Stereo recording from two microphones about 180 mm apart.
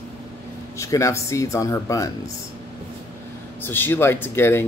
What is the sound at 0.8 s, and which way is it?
Speech, 15° left (ahead or behind).